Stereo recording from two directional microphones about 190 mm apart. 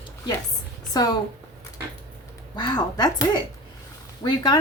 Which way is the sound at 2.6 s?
20° left (ahead or behind).